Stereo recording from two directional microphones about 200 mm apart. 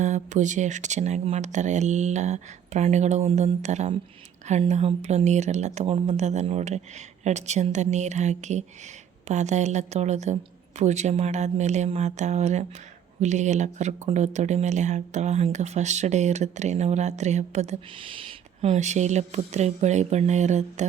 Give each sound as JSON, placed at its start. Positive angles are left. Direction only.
{"t": 0.0, "sound": "speech", "side_deg": -35}